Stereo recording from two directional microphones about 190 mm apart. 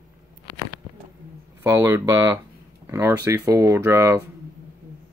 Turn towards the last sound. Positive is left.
turn(degrees=-15)  # may be behind; listen again after turning